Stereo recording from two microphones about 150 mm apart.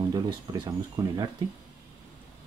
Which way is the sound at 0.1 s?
25° right (ahead or behind).